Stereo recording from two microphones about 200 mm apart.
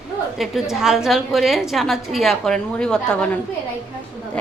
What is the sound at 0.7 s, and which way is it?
A woman's voice, centre (ahead or behind).